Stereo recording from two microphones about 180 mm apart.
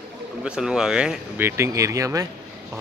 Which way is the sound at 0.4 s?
5° right (ahead or behind).